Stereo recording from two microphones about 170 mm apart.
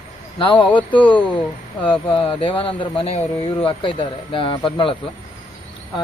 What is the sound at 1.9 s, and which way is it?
Speech, 30° left (ahead or behind).